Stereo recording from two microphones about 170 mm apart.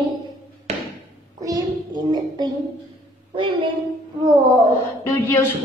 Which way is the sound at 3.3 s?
30° right (ahead or behind).